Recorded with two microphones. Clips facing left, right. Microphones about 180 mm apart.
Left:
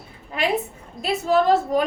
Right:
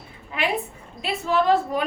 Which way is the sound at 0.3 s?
40° left (ahead or behind).